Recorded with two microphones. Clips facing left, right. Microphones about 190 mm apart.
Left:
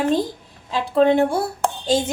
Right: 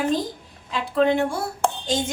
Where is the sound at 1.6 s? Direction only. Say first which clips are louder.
Even; centre (ahead or behind).